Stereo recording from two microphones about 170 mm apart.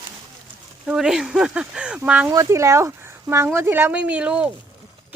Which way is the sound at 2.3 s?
20° right (ahead or behind).